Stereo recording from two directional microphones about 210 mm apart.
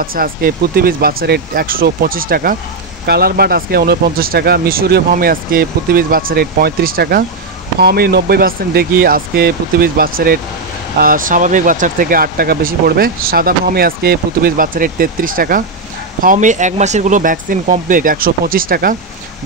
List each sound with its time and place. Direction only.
0.0 s speech: 45° right (ahead or behind)